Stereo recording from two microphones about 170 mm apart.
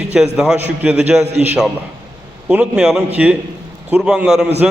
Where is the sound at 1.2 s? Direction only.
40° right (ahead or behind).